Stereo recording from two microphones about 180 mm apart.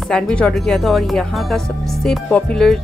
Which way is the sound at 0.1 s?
5° left (ahead or behind).